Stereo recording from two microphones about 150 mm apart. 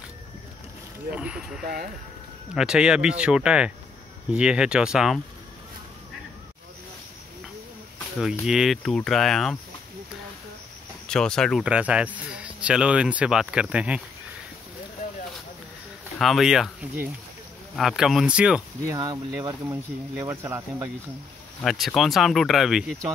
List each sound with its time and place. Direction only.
1.1 s speech: 5° right (ahead or behind)
8.2 s speech: 5° right (ahead or behind)
11.1 s speech: 5° left (ahead or behind)
11.6 s speech: 10° right (ahead or behind)
16.2 s speech: centre (ahead or behind)
17.7 s speech: centre (ahead or behind)
18.9 s speech: 25° right (ahead or behind)
21.5 s speech: centre (ahead or behind)